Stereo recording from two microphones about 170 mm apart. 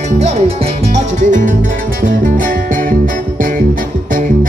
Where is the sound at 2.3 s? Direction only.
50° right (ahead or behind).